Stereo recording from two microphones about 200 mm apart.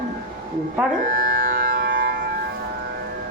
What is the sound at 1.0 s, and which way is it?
Music, 45° right (ahead or behind).